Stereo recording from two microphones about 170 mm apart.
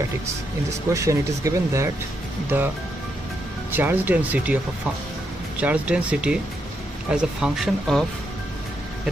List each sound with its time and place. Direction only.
0.8 s speech: 15° right (ahead or behind)
3.7 s speech: 10° right (ahead or behind)
5.6 s speech: 5° right (ahead or behind)